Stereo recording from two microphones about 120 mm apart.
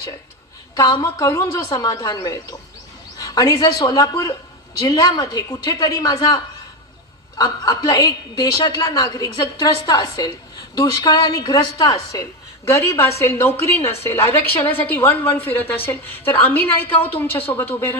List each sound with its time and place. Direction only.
0.8 s a woman's voice: 35° left (ahead or behind); by 17.9 s 15° left (ahead or behind)